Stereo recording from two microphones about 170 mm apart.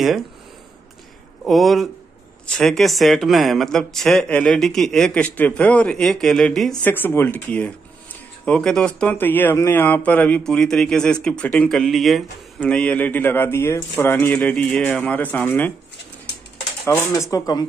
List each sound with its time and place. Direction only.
0.0 s speech: centre (ahead or behind)
1.4 s speech: centre (ahead or behind)
16.8 s speech: 15° left (ahead or behind)